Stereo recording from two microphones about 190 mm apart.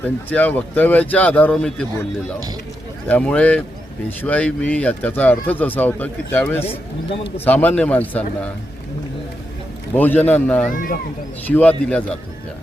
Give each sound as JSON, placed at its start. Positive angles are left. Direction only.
{"t": 0.3, "sound": "speech", "side_deg": 10}
{"t": 3.1, "sound": "speech", "side_deg": 5}
{"t": 9.9, "sound": "speech", "side_deg": 10}
{"t": 10.8, "sound": "speech", "side_deg": 50}
{"t": 11.4, "sound": "speech", "side_deg": 10}